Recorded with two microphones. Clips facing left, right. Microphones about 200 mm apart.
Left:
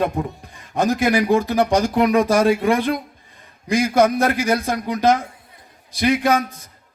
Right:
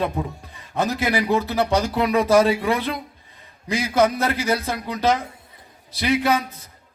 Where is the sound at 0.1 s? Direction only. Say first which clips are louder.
Left 2 dB; 15° left (ahead or behind).